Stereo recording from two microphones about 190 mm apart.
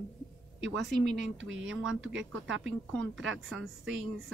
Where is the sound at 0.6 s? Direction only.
65° right (ahead or behind).